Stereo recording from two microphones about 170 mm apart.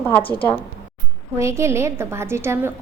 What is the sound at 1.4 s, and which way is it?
A woman's voice, 15° right (ahead or behind).